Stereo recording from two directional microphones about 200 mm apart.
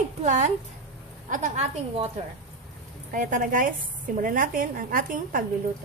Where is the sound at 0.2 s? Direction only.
35° right (ahead or behind).